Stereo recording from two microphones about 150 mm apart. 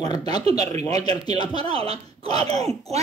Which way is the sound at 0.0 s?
25° left (ahead or behind).